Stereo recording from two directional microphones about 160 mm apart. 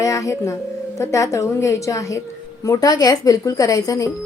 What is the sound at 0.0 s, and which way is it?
A woman's voice, 20° left (ahead or behind).